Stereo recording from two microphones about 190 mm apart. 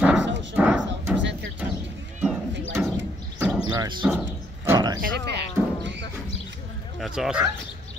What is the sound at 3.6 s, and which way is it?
Music, 20° right (ahead or behind).